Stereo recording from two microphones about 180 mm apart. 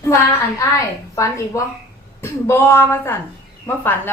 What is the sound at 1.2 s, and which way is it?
A woman's voice, 15° left (ahead or behind).